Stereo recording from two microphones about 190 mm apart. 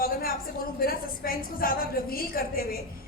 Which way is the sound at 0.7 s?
50° left (ahead or behind).